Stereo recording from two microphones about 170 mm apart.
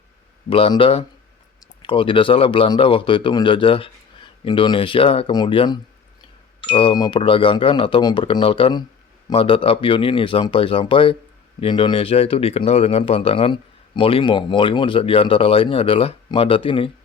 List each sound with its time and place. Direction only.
0.5 s speech: 30° left (ahead or behind)